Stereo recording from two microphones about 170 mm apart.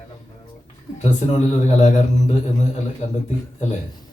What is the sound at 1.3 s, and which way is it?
Speech, 40° left (ahead or behind).